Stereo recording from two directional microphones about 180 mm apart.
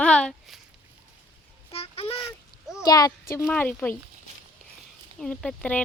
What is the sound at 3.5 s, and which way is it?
Speech, 5° left (ahead or behind).